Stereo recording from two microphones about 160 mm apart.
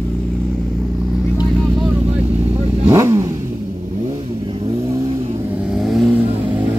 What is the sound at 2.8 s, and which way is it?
Vehicle, 15° right (ahead or behind).